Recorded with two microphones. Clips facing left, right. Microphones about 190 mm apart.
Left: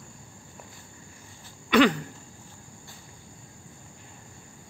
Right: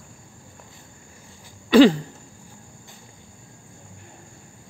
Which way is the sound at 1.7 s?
30° right (ahead or behind).